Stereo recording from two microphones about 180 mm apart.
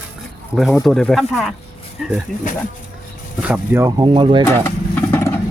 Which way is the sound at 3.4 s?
10° right (ahead or behind).